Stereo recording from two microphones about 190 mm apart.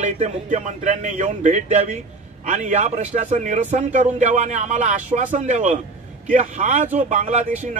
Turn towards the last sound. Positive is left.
turn(degrees=-40)  # may be behind; listen again after turning